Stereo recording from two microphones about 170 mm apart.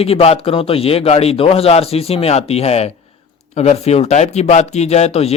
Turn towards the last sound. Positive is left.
turn(degrees=40)  # may be behind; listen again after turning